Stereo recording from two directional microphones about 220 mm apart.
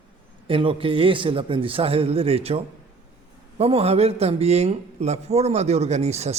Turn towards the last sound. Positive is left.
turn(degrees=-30)  # may be behind; listen again after turning